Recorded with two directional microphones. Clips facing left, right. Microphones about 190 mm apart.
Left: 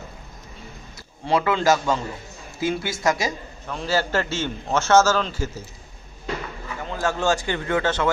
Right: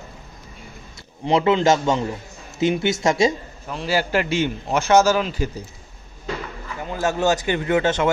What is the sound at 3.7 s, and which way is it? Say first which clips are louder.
A man's voice: right 1 dB; 10° right (ahead or behind).